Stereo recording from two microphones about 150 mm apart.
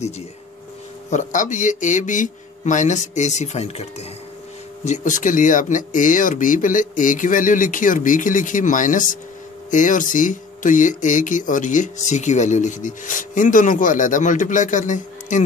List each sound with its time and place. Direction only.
1.1 s speech: 55° left (ahead or behind)
4.8 s speech: 55° left (ahead or behind)